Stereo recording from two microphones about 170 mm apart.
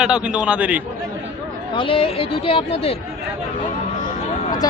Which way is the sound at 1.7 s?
30° left (ahead or behind).